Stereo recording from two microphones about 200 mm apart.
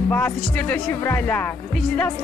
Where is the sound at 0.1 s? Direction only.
5° left (ahead or behind).